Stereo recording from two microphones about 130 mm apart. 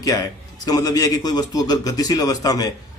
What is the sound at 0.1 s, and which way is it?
A man's voice, 30° left (ahead or behind).